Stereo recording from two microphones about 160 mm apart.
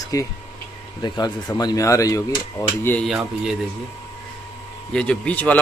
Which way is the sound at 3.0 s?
5° right (ahead or behind).